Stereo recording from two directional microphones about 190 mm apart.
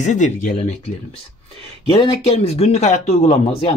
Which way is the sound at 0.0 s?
40° left (ahead or behind).